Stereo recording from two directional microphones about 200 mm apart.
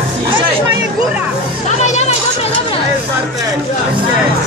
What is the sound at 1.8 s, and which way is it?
Children playing, 35° left (ahead or behind).